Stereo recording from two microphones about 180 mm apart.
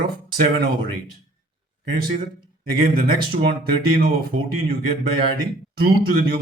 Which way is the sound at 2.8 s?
55° right (ahead or behind).